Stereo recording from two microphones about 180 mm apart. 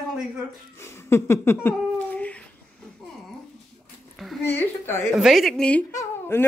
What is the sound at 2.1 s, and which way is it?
Babbling, 10° left (ahead or behind).